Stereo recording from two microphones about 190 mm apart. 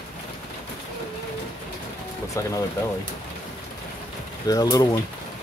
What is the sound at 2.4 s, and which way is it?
Speech, 15° left (ahead or behind).